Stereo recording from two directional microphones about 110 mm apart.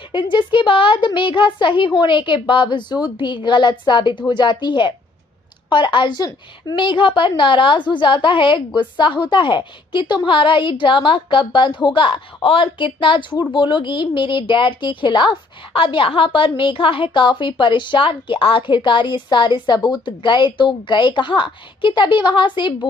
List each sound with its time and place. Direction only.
0.1 s a woman's voice: 45° left (ahead or behind)